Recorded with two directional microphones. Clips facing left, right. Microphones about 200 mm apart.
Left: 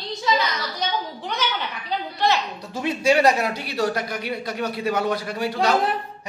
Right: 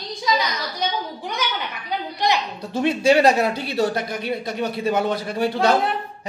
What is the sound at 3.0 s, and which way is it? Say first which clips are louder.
Speech: right 2 dB; 25° right (ahead or behind).